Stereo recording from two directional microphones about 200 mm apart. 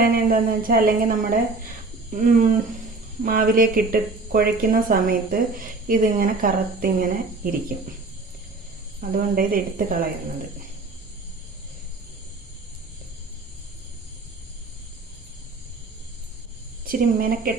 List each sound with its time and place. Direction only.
0.0 s speech: 45° right (ahead or behind)
9.0 s speech: 45° right (ahead or behind)
16.8 s speech: 45° right (ahead or behind)